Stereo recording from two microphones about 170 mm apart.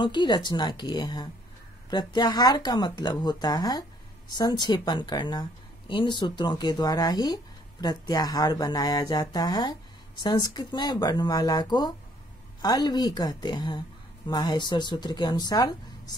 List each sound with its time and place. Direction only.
0.0 s speech: 25° left (ahead or behind)